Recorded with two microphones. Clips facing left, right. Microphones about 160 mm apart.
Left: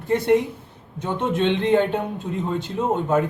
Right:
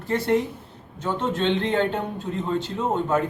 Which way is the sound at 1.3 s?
10° left (ahead or behind).